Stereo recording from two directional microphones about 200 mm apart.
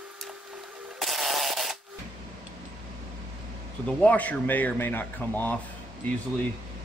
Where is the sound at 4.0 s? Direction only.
5° left (ahead or behind).